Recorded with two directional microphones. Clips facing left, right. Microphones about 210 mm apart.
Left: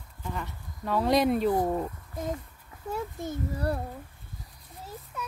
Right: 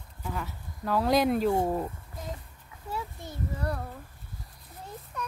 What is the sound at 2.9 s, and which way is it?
Speech, 50° left (ahead or behind).